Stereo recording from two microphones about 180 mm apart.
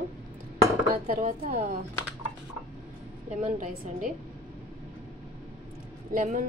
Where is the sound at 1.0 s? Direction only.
50° right (ahead or behind).